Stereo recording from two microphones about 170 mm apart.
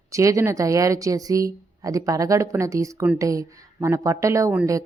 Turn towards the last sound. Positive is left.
turn(degrees=-20)  # may be behind; listen again after turning